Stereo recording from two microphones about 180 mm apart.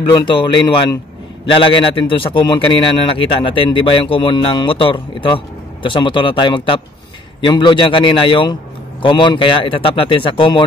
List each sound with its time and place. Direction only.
0.1 s a man's voice: 25° left (ahead or behind)